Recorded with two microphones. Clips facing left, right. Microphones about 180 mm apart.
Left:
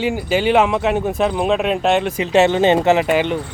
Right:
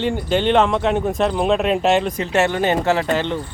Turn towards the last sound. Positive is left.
turn(degrees=15)  # may be behind; listen again after turning